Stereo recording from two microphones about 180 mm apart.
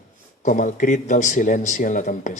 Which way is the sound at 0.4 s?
45° left (ahead or behind).